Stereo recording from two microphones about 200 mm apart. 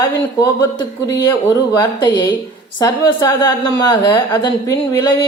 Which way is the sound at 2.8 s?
15° left (ahead or behind).